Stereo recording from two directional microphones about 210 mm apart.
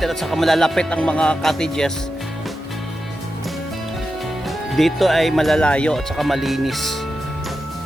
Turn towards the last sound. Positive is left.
turn(degrees=0)  # may be behind; listen again after turning